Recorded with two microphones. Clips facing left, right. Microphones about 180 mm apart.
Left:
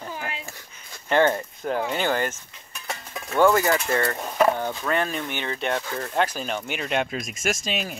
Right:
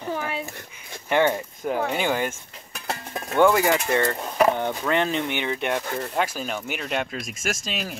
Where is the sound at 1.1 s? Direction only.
15° right (ahead or behind).